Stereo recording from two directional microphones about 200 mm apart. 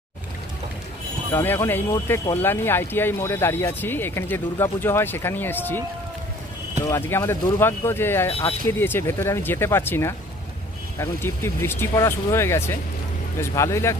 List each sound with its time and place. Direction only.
1.3 s speech: 10° left (ahead or behind)
8.3 s speech: 30° left (ahead or behind)
8.6 s speech: 10° left (ahead or behind)